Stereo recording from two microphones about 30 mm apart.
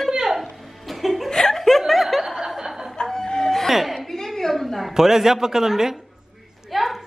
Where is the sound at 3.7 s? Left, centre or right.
Centre.